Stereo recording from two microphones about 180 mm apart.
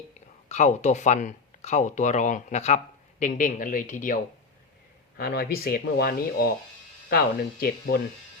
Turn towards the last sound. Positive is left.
turn(degrees=55)  # may be behind; listen again after turning